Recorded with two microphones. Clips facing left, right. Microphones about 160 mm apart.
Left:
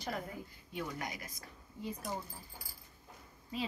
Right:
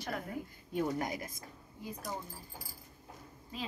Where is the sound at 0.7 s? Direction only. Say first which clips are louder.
Right 7 dB; 40° right (ahead or behind).